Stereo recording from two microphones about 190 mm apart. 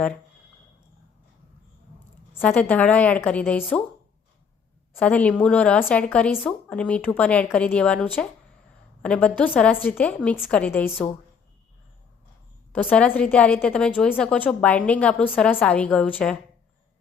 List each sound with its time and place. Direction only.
2.3 s a woman's voice: 10° left (ahead or behind)
4.9 s a woman's voice: 10° left (ahead or behind)
12.7 s a woman's voice: 10° left (ahead or behind)